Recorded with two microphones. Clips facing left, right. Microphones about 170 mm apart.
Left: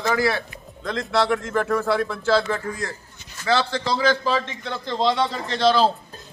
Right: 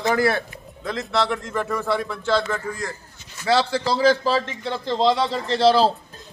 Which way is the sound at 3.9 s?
35° right (ahead or behind).